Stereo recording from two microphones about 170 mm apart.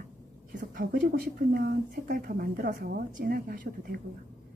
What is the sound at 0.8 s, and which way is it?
Speech, 60° right (ahead or behind).